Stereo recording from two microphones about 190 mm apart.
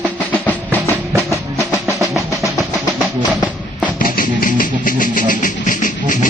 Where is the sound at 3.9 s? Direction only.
45° left (ahead or behind).